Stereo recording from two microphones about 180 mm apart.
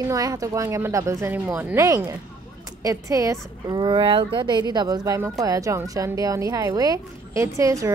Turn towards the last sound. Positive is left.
turn(degrees=-15)  # may be behind; listen again after turning